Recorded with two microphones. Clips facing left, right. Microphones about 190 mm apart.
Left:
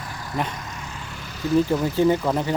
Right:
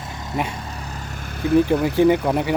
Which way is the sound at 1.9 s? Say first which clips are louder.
Right 3 dB; 15° right (ahead or behind).